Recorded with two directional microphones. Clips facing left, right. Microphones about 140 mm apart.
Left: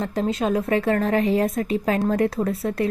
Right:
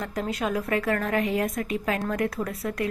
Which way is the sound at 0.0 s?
25° left (ahead or behind).